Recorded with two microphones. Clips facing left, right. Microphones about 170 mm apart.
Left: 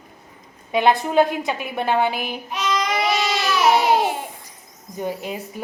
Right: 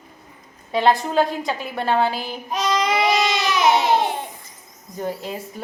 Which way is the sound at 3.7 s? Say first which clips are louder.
Left 1 dB; 10° left (ahead or behind).